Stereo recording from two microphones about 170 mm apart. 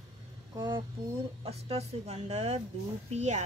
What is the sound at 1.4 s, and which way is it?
Speech, 40° right (ahead or behind).